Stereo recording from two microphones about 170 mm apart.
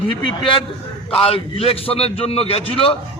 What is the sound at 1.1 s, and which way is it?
A man's voice, 35° left (ahead or behind).